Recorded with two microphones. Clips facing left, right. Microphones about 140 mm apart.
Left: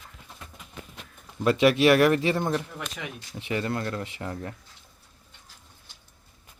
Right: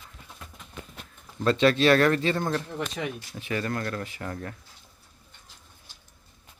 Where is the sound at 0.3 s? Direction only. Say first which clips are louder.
Even; 5° left (ahead or behind).